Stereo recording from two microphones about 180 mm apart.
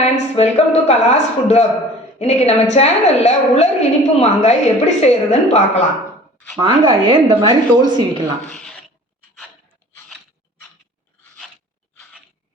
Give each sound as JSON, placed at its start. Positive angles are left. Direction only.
{"t": 0.0, "sound": "a woman's voice", "side_deg": 35}
{"t": 6.6, "sound": "a woman's voice", "side_deg": -25}
{"t": 8.4, "sound": "speech", "side_deg": -40}